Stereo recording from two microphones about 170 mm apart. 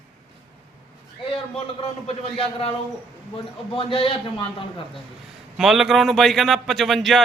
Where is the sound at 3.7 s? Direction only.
30° left (ahead or behind).